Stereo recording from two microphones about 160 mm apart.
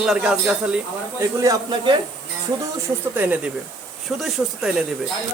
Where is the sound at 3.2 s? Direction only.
10° right (ahead or behind).